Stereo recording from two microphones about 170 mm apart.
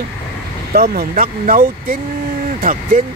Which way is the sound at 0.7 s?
60° right (ahead or behind).